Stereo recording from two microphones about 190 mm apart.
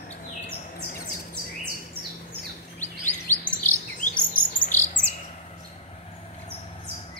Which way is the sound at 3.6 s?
45° left (ahead or behind).